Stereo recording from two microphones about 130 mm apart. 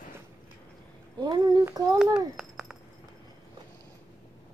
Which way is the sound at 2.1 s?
5° right (ahead or behind).